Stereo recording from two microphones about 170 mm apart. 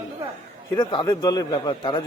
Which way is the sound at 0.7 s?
25° left (ahead or behind).